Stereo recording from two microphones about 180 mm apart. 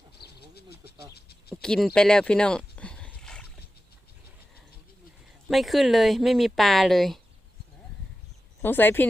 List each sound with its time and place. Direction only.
0.2 s bird: 65° left (ahead or behind)
1.6 s a sound: 5° left (ahead or behind)
5.5 s speech: centre (ahead or behind)
8.6 s speech: 10° left (ahead or behind)